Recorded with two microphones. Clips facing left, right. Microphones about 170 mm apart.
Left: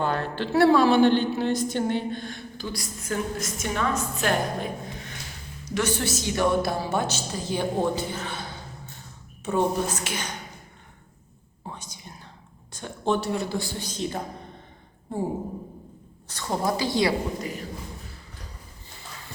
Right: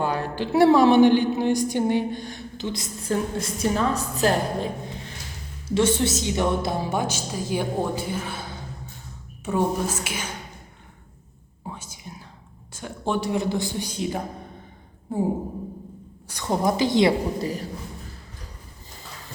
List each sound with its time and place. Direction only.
0.0 s a woman's voice: 10° right (ahead or behind)
11.7 s whispering: 5° right (ahead or behind)
12.7 s a woman's voice: 10° right (ahead or behind)
16.3 s a woman's voice: 15° right (ahead or behind)
17.4 s speech: 35° right (ahead or behind)